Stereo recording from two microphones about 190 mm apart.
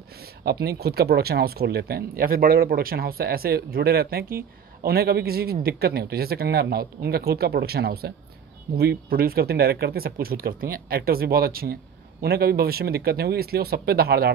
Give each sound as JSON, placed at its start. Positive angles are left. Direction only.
{"t": 0.2, "sound": "speech", "side_deg": -55}